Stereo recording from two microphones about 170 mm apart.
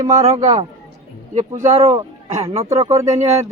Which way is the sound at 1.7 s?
40° right (ahead or behind).